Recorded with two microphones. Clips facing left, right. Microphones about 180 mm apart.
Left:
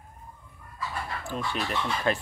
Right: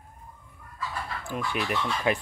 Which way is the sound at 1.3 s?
10° right (ahead or behind).